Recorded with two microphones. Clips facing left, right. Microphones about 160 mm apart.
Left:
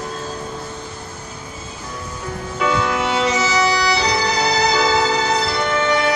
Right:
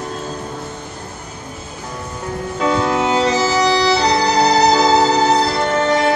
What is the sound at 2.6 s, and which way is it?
Music, 35° right (ahead or behind).